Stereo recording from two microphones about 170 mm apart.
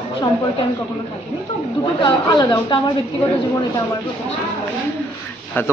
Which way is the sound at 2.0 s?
25° left (ahead or behind).